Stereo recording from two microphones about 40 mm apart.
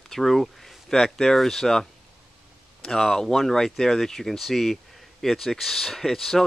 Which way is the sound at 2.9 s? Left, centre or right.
Centre.